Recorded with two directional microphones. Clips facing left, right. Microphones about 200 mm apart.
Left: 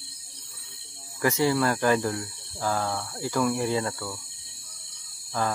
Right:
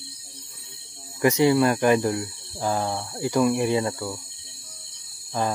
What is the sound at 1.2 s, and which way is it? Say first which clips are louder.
Speech: right 5 dB; 20° right (ahead or behind).